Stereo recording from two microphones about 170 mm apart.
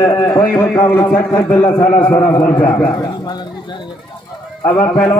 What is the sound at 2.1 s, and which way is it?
Speech, 20° left (ahead or behind).